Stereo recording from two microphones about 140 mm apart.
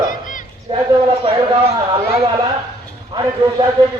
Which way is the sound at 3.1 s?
30° right (ahead or behind).